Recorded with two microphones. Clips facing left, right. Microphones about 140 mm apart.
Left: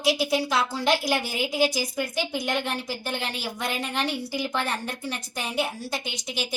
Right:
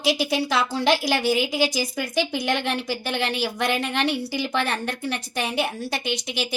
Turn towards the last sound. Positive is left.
turn(degrees=-75)  # may be behind; listen again after turning